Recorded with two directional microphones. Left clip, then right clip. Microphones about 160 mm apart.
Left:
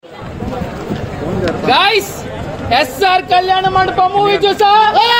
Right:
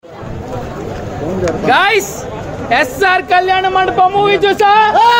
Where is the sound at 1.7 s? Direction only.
10° right (ahead or behind).